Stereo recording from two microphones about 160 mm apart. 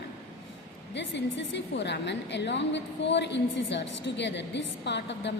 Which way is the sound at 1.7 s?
90° left.